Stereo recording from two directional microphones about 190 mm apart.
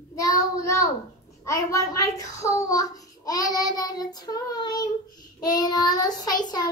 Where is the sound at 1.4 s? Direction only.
15° left (ahead or behind).